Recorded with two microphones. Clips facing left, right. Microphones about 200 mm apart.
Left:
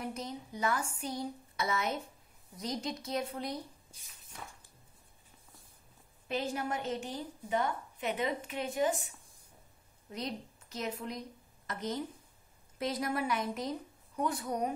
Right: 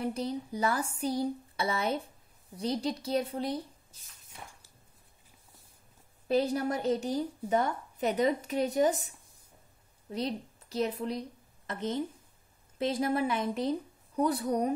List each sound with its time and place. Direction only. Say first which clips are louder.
0.0 s a woman's voice: right 7 dB; 35° right (ahead or behind)
6.2 s a woman's voice: right 7 dB; 35° right (ahead or behind)
10.1 s a woman's voice: right 6 dB; 30° right (ahead or behind)